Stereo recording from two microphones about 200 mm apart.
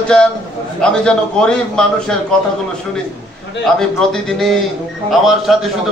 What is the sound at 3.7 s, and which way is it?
A man's voice, centre (ahead or behind).